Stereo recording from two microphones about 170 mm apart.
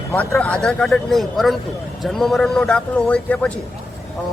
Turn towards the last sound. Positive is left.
turn(degrees=5)  # may be behind; listen again after turning